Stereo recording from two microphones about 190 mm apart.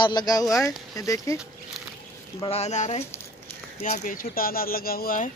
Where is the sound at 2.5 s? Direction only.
35° left (ahead or behind).